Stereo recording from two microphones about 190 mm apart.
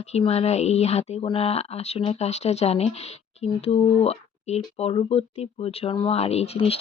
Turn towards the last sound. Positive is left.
turn(degrees=30)  # may be behind; listen again after turning